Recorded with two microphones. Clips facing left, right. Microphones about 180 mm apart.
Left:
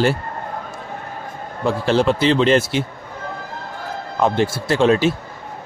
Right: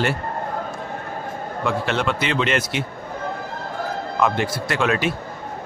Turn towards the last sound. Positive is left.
turn(degrees=30)  # may be behind; listen again after turning